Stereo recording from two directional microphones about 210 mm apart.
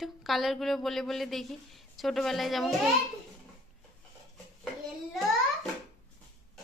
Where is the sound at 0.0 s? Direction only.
Centre (ahead or behind).